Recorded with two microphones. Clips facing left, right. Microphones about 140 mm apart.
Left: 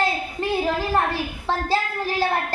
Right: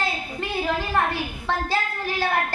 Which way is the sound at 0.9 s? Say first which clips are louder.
Left 2 dB; 35° left (ahead or behind).